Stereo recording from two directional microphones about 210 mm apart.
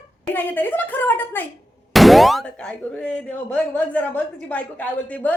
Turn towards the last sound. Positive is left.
turn(degrees=5)  # may be behind; listen again after turning